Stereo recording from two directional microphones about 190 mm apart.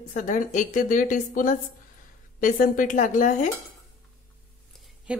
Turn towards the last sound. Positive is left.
turn(degrees=-5)  # may be behind; listen again after turning